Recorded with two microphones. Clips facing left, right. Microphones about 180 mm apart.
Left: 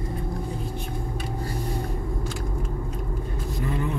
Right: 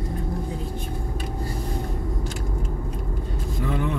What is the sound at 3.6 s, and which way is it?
Vehicle, 90° right.